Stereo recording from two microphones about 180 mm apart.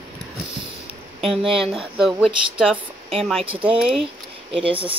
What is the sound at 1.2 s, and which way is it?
Speech, centre (ahead or behind).